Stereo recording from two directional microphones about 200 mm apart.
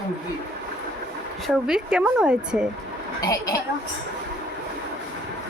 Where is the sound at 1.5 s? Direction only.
5° right (ahead or behind).